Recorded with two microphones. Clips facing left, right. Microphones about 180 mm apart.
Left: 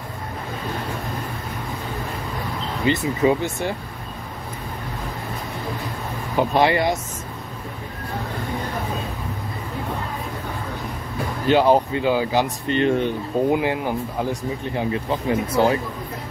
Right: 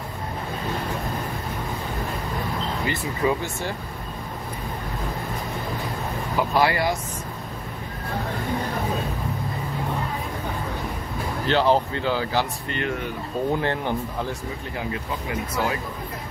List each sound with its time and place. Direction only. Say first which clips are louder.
2.8 s speech: left 7 dB; 20° left (ahead or behind)
6.5 s speech: left 3 dB; 20° left (ahead or behind)
11.4 s speech: left 4 dB; 15° left (ahead or behind)
13.5 s speech: left 1 dB; 10° left (ahead or behind)
14.8 s speech: left 6 dB; 30° left (ahead or behind)